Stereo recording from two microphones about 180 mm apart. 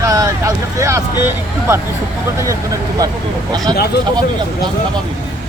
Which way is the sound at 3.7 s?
60° left (ahead or behind).